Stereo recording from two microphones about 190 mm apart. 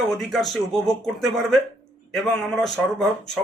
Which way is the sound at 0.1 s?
Centre (ahead or behind).